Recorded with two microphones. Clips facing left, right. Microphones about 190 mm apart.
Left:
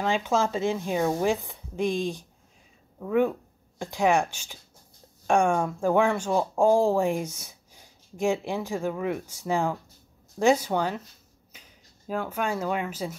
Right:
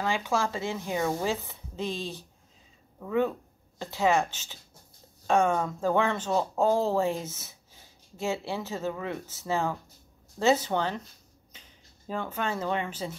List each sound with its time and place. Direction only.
0.0 s speech: 20° left (ahead or behind)
12.1 s speech: 10° left (ahead or behind)